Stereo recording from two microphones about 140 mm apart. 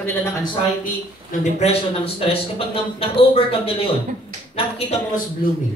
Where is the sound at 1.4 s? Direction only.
50° left (ahead or behind).